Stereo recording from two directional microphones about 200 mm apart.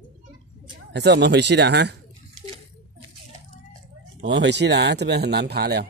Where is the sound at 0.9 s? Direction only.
55° right (ahead or behind).